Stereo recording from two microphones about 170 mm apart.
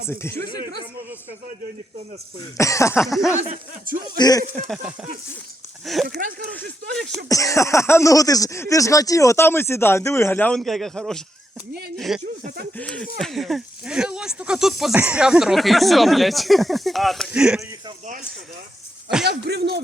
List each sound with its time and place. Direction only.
0.1 s speech: 15° left (ahead or behind)
0.4 s speech: 60° right (ahead or behind)
2.6 s speech: 15° left (ahead or behind)
3.0 s speech: centre (ahead or behind)
3.5 s speech: 55° right (ahead or behind)
4.2 s speech: 20° left (ahead or behind)
5.8 s speech: centre (ahead or behind)
6.1 s speech: 65° right (ahead or behind)
7.3 s speech: 20° left (ahead or behind); by 17.6 s 5° right (ahead or behind)
19.3 s speech: 75° right (ahead or behind)